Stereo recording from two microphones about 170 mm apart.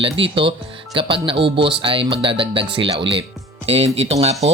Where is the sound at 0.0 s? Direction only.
30° right (ahead or behind).